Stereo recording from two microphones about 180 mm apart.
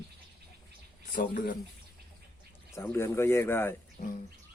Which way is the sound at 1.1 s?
50° left (ahead or behind).